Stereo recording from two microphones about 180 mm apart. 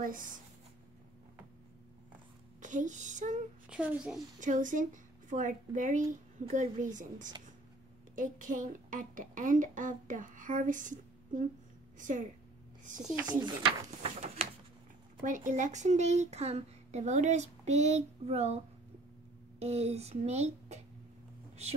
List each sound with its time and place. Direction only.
0.0 s speech: 50° right (ahead or behind)
2.6 s speech: 45° right (ahead or behind)
3.6 s speech: 5° right (ahead or behind)
4.4 s speech: 45° right (ahead or behind)
14.0 s a sound: 30° right (ahead or behind)
15.2 s speech: 45° right (ahead or behind)
19.6 s speech: 35° right (ahead or behind)